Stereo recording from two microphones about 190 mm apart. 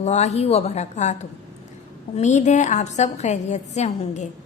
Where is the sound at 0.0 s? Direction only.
35° left (ahead or behind).